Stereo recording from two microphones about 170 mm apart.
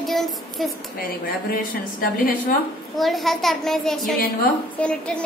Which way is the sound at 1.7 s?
55° left (ahead or behind).